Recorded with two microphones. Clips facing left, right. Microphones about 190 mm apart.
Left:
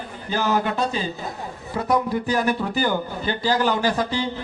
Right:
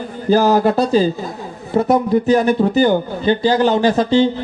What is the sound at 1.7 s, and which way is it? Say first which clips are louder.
A man's voice: right 8 dB; 25° right (ahead or behind).